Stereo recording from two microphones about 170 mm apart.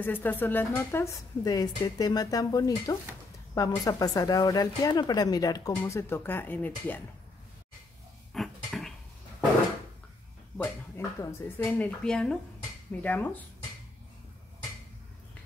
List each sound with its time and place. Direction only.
0.0 s a woman's voice: 10° left (ahead or behind)
8.3 s dishes: centre (ahead or behind)
10.6 s a woman's voice: 15° left (ahead or behind)